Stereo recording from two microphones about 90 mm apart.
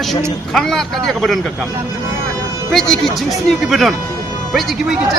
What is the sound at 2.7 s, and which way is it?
Speech, 5° left (ahead or behind).